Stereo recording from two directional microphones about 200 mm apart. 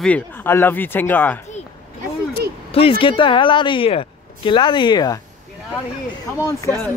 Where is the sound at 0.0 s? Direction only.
10° left (ahead or behind).